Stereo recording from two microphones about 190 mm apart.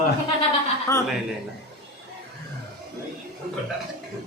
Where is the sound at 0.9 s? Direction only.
15° left (ahead or behind).